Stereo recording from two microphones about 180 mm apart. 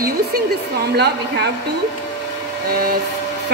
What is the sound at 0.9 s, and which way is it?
Speech, 65° right (ahead or behind).